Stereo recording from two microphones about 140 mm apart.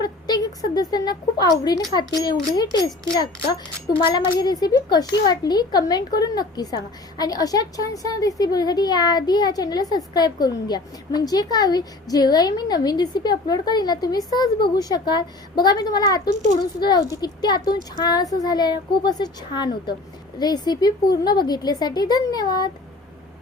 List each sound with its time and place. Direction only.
0.0 s a woman's voice: 30° left (ahead or behind)
4.0 s a child's voice: 35° left (ahead or behind)